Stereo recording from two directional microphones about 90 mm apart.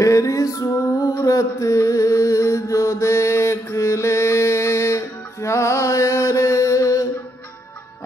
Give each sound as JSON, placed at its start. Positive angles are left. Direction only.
{"t": 0.0, "sound": "music", "side_deg": 35}
{"t": 1.2, "sound": "mantra", "side_deg": 35}
{"t": 3.7, "sound": "music", "side_deg": 30}